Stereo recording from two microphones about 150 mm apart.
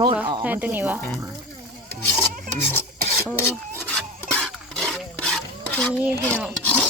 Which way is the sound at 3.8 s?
5° left (ahead or behind).